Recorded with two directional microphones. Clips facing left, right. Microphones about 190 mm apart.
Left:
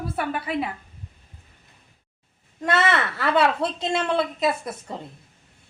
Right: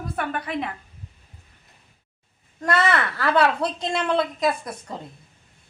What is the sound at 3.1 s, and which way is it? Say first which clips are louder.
A woman's voice: right 1 dB; centre (ahead or behind).